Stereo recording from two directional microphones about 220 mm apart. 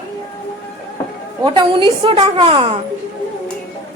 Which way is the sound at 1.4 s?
20° right (ahead or behind).